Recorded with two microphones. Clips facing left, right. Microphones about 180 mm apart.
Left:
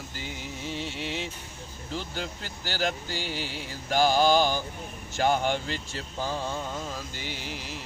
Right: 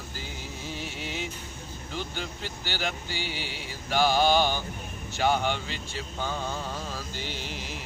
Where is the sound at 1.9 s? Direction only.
40° left (ahead or behind).